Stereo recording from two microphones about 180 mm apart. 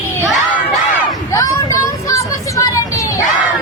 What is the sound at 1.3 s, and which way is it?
Vehicle, 20° left (ahead or behind).